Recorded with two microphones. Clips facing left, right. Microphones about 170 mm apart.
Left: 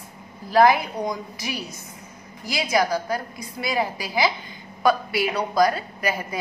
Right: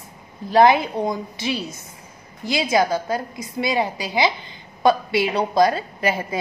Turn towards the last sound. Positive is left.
turn(degrees=-25)  # may be behind; listen again after turning